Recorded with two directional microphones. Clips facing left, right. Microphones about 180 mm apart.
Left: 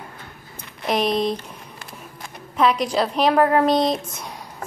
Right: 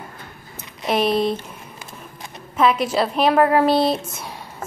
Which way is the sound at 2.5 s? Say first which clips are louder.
Right 1 dB; 5° right (ahead or behind).